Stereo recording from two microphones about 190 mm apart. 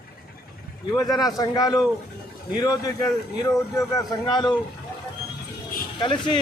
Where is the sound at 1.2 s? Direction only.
20° left (ahead or behind).